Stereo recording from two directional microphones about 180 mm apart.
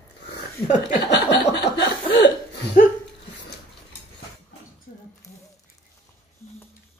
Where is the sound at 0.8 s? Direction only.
70° left (ahead or behind).